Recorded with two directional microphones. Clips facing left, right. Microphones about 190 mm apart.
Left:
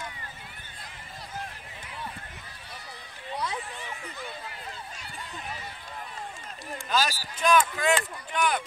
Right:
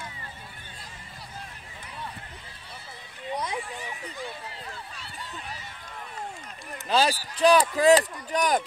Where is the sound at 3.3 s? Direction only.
20° right (ahead or behind).